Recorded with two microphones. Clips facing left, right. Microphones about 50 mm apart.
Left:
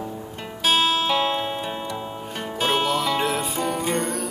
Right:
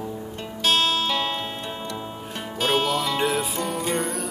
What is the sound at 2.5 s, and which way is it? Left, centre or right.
Music, centre.